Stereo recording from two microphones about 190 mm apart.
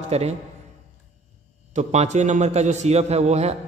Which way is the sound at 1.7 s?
35° right (ahead or behind).